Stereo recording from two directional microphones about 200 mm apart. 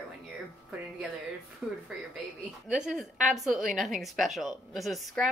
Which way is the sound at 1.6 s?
5° right (ahead or behind).